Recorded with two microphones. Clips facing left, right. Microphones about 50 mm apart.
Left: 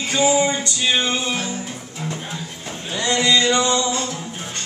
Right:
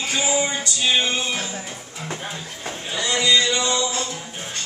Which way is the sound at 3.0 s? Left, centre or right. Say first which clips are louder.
Left 3 dB; left.